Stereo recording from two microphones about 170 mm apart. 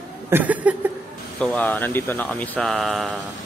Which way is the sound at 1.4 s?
5° left (ahead or behind).